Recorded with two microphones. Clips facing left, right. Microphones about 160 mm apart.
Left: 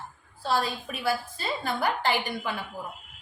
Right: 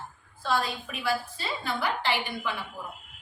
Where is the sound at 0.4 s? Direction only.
40° left (ahead or behind).